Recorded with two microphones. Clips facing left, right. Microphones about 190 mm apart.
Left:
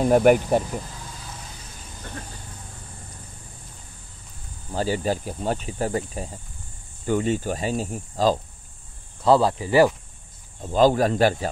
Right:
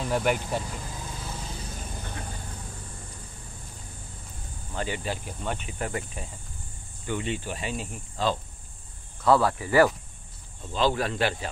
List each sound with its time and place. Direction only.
0.0 s speech: 50° left (ahead or behind)
4.7 s speech: 35° left (ahead or behind)
9.2 s speech: 25° left (ahead or behind)
10.6 s speech: 45° left (ahead or behind)